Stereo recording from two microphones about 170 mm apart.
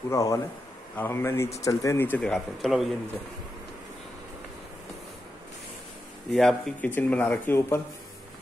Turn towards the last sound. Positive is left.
turn(degrees=10)  # may be behind; listen again after turning